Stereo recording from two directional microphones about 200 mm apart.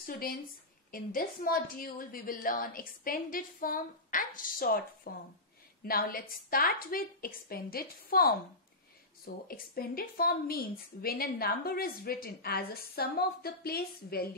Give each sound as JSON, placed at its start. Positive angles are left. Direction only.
{"t": 0.0, "sound": "a woman's voice", "side_deg": 50}